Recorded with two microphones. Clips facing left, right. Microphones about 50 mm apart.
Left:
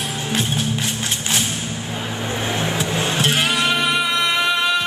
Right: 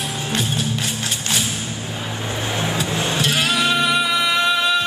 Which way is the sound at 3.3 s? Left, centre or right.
Centre.